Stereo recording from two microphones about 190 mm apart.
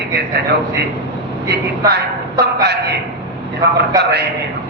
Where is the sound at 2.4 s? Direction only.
60° right (ahead or behind).